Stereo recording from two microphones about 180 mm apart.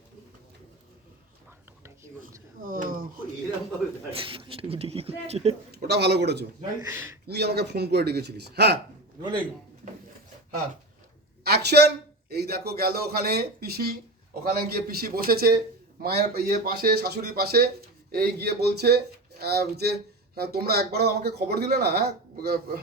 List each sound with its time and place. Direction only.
2.2 s a sound: 50° right (ahead or behind)
4.1 s speech: 30° right (ahead or behind)
5.7 s speech: 65° right (ahead or behind)
6.8 s speech: 10° right (ahead or behind)
7.3 s speech: 65° right (ahead or behind)
11.4 s a man's voice: 65° right (ahead or behind)